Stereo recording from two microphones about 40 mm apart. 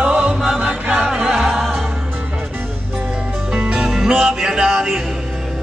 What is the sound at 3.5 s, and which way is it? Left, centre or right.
Music, centre.